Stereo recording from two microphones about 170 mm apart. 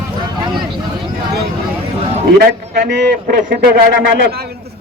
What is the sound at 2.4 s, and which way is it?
A man's voice, 60° right (ahead or behind).